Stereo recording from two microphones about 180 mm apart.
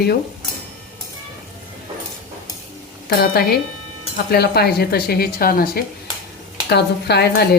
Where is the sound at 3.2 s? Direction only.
60° left (ahead or behind).